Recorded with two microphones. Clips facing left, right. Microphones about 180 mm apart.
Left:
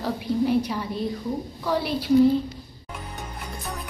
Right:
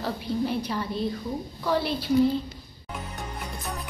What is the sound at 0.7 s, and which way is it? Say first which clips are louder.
A woman's voice: left 1 dB; 10° left (ahead or behind).